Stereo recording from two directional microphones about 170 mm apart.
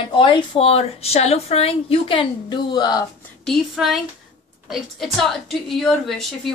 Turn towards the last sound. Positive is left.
turn(degrees=0)  # may be behind; listen again after turning